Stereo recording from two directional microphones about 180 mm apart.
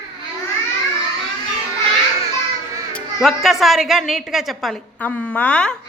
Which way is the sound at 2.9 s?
Centre (ahead or behind).